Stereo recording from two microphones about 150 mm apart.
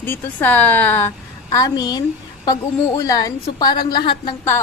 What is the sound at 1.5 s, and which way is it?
Speech, 25° left (ahead or behind).